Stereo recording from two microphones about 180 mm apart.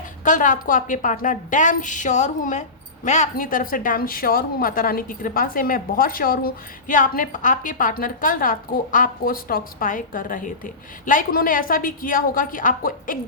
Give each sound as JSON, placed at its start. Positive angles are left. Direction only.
{"t": 0.3, "sound": "a woman's voice", "side_deg": 45}